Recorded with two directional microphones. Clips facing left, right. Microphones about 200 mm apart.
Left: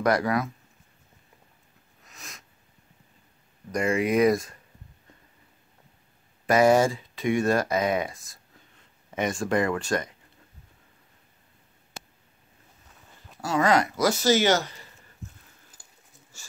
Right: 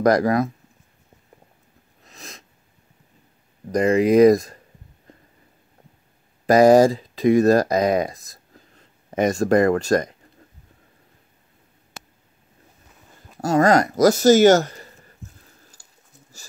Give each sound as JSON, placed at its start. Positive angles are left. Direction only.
{"t": 0.0, "sound": "speech", "side_deg": -35}
{"t": 2.0, "sound": "sniff", "side_deg": -30}
{"t": 3.7, "sound": "speech", "side_deg": -35}
{"t": 6.4, "sound": "speech", "side_deg": -35}
{"t": 13.4, "sound": "speech", "side_deg": -45}
{"t": 16.3, "sound": "speech", "side_deg": -40}